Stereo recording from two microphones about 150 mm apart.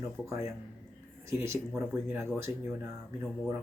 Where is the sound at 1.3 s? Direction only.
15° right (ahead or behind).